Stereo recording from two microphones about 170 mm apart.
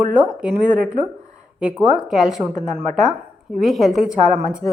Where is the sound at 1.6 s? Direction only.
5° right (ahead or behind).